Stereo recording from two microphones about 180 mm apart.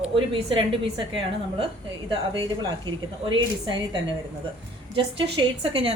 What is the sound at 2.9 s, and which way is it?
A woman's voice, 25° right (ahead or behind).